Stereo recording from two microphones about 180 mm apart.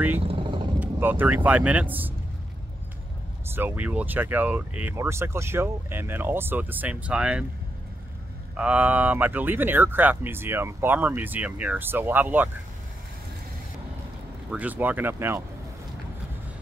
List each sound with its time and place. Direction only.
0.2 s vehicle: 30° right (ahead or behind)
0.7 s speech: 10° right (ahead or behind)
3.4 s speech: 10° right (ahead or behind)
8.5 s speech: 5° right (ahead or behind)
14.5 s speech: 10° right (ahead or behind)